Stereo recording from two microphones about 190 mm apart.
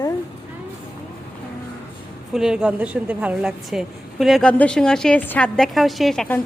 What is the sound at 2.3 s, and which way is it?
A woman's voice, 5° right (ahead or behind).